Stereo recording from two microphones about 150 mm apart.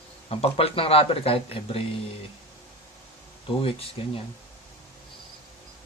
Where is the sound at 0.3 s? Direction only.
40° left (ahead or behind).